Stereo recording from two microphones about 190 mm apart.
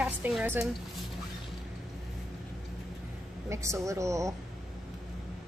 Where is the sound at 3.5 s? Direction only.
15° right (ahead or behind).